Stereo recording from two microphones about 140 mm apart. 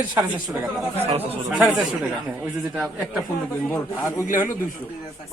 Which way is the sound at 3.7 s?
20° left (ahead or behind).